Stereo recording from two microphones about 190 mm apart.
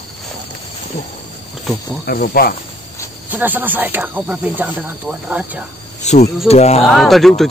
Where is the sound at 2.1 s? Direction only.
55° left (ahead or behind).